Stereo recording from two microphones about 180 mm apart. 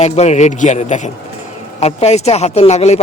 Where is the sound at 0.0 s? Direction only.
40° left (ahead or behind).